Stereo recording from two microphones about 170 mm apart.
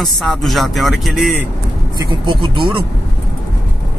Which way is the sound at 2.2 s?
30° right (ahead or behind).